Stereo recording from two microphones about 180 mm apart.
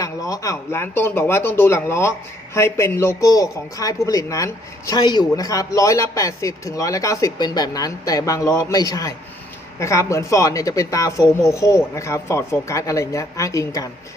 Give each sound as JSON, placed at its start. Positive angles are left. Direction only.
{"t": 0.0, "sound": "speech", "side_deg": 20}